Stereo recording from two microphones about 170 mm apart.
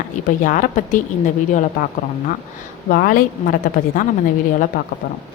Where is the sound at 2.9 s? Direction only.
60° left (ahead or behind).